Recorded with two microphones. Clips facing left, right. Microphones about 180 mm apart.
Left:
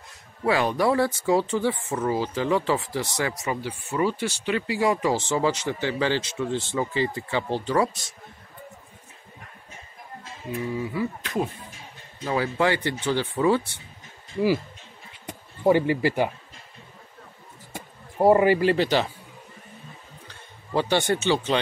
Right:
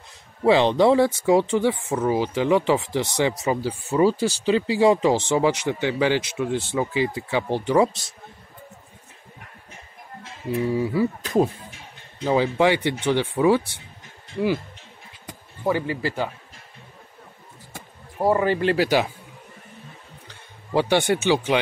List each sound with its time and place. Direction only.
0.4 s speech: 25° right (ahead or behind)
3.4 s speech: 35° right (ahead or behind); by 7.9 s 15° right (ahead or behind)
10.7 s speech: 30° right (ahead or behind)
12.3 s speech: 20° right (ahead or behind)
15.2 s speech: 15° left (ahead or behind)
18.2 s speech: 15° left (ahead or behind)
18.8 s speech: 10° right (ahead or behind)
20.7 s speech: 15° right (ahead or behind)